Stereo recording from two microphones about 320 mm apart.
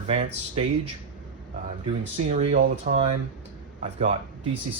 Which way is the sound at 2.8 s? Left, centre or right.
Right.